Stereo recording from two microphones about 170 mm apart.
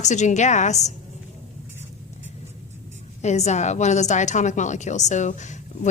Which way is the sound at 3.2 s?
40° left (ahead or behind).